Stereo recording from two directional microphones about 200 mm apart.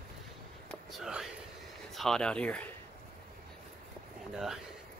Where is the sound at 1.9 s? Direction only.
Centre (ahead or behind).